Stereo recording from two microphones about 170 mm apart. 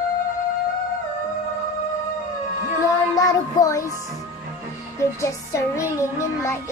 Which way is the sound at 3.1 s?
20° left (ahead or behind).